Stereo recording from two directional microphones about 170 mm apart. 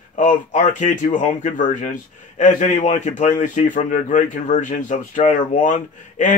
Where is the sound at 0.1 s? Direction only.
50° left (ahead or behind).